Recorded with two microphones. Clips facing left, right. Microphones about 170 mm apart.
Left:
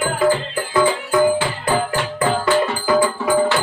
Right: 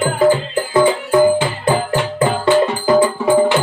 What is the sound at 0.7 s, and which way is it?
Music, 25° right (ahead or behind).